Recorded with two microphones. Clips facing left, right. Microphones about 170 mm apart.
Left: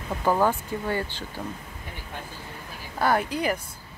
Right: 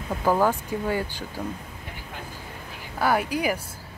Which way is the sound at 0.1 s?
5° right (ahead or behind).